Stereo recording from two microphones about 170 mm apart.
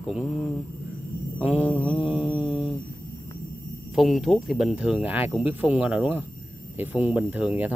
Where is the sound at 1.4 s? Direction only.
10° right (ahead or behind).